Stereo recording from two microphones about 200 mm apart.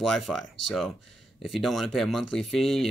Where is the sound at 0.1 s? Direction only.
Centre (ahead or behind).